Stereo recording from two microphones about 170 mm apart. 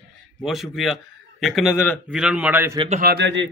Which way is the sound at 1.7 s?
10° left (ahead or behind).